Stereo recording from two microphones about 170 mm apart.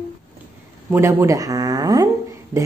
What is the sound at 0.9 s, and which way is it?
Speech, 15° right (ahead or behind).